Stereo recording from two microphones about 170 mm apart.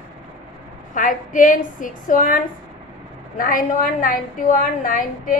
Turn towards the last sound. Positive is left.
turn(degrees=55)  # may be behind; listen again after turning